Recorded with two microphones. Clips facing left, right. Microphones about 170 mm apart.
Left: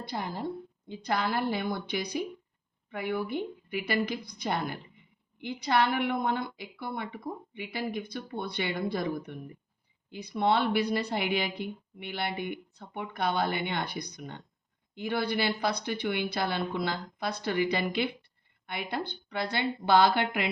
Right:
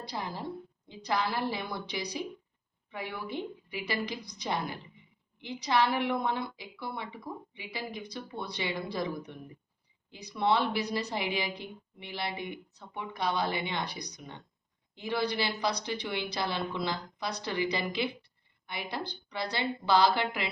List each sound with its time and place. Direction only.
0.0 s speech: 50° left (ahead or behind)